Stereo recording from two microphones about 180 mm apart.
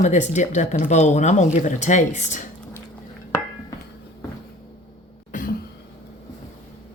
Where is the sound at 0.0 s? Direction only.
40° left (ahead or behind).